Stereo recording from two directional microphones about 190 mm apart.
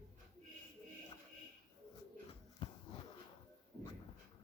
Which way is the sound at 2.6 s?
30° left (ahead or behind).